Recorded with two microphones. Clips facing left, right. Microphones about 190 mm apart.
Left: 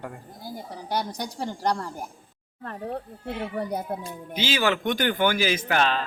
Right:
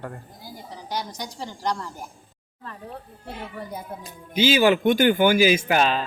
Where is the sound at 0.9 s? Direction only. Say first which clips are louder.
Left 3 dB; 60° left (ahead or behind).